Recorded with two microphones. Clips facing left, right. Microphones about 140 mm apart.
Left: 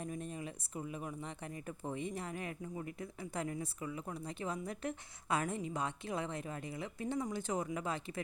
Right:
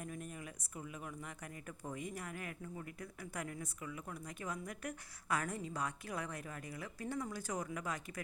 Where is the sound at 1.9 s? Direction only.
25° left (ahead or behind).